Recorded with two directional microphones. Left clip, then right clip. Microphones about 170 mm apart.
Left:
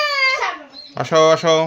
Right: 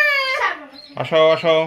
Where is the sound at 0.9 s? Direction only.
45° left (ahead or behind).